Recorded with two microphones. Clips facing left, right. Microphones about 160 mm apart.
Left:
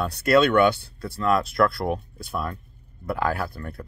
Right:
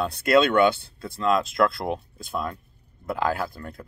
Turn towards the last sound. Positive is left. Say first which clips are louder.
# even
turn(degrees=-20)  # may be behind; listen again after turning